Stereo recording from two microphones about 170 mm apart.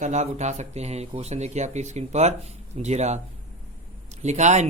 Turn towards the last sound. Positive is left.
turn(degrees=-45)  # may be behind; listen again after turning